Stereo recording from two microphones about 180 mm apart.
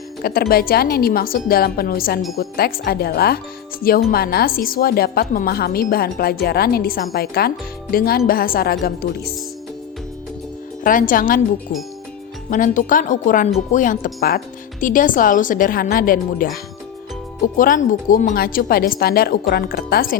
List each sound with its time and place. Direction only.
0.2 s speech: 55° left (ahead or behind)
10.8 s speech: 50° left (ahead or behind)
12.5 s speech: 45° left (ahead or behind)